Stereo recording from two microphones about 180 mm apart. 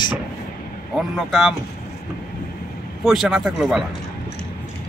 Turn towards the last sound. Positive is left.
turn(degrees=0)  # may be behind; listen again after turning